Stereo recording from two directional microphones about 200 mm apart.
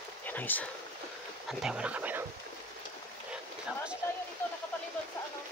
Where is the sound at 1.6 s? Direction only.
5° right (ahead or behind).